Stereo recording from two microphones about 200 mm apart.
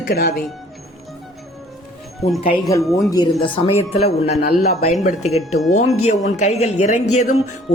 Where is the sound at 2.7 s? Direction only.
15° left (ahead or behind); by 7.4 s 35° left (ahead or behind).